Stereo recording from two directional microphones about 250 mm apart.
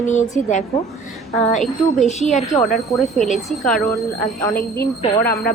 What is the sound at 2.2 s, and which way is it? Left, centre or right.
Speech, left.